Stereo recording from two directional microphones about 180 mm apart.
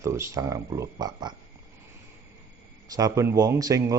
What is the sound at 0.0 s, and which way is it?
Speech, 15° right (ahead or behind).